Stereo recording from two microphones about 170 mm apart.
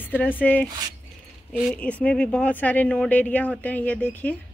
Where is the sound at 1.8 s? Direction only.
5° left (ahead or behind).